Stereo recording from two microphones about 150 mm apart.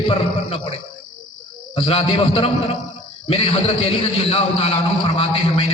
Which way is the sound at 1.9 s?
40° left (ahead or behind).